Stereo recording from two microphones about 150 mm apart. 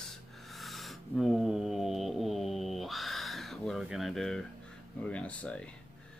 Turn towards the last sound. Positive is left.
turn(degrees=10)  # may be behind; listen again after turning